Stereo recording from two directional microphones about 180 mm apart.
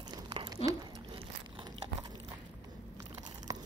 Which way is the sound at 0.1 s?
25° right (ahead or behind).